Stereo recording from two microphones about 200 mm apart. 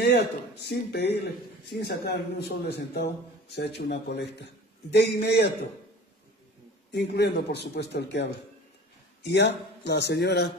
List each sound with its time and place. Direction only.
0.0 s a man's voice: 55° left (ahead or behind)
6.9 s a man's voice: 55° left (ahead or behind)